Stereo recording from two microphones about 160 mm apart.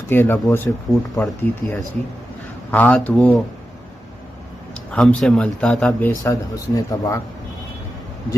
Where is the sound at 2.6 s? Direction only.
10° left (ahead or behind).